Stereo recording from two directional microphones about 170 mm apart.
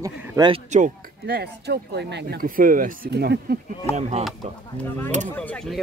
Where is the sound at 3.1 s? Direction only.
75° right (ahead or behind).